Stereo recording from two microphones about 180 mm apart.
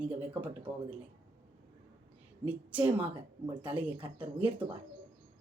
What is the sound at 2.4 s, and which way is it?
Speech, 10° right (ahead or behind).